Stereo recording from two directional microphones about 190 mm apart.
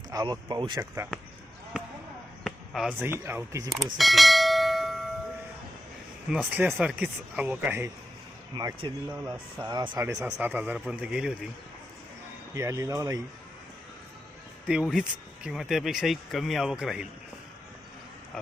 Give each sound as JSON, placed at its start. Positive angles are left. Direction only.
{"t": 0.1, "sound": "speech", "side_deg": -20}
{"t": 1.1, "sound": "speech", "side_deg": 5}
{"t": 1.7, "sound": "basketball bounce", "side_deg": -5}
{"t": 2.4, "sound": "speech", "side_deg": 0}
{"t": 3.9, "sound": "bell", "side_deg": 0}
{"t": 6.3, "sound": "speech", "side_deg": -5}
{"t": 8.5, "sound": "speech", "side_deg": -20}
{"t": 12.5, "sound": "speech", "side_deg": -15}
{"t": 14.7, "sound": "speech", "side_deg": 0}